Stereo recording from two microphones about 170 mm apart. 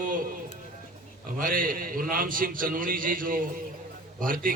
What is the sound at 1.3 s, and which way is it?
A man's voice, 55° right (ahead or behind).